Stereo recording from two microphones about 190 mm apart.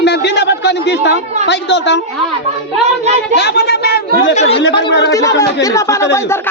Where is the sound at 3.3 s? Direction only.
60° left (ahead or behind).